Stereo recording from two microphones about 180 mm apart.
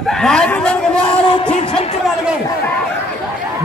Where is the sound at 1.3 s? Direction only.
30° left (ahead or behind).